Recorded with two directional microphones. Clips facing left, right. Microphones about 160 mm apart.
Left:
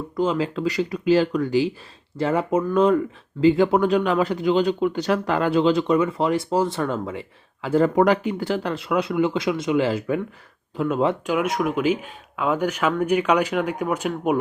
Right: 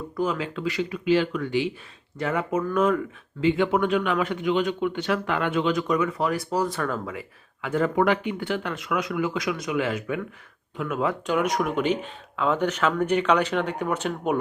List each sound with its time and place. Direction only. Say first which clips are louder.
0.2 s speech: left 5 dB; 30° left (ahead or behind)
11.3 s speech: left 2 dB; 5° left (ahead or behind)